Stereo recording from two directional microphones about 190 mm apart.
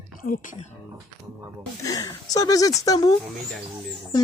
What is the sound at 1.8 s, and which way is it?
Speech, 20° left (ahead or behind).